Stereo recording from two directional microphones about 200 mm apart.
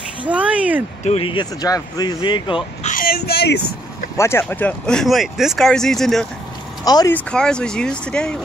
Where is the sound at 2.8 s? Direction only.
45° left (ahead or behind).